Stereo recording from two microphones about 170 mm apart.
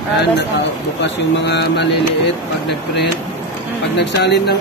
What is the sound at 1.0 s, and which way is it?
Speech, 85° left.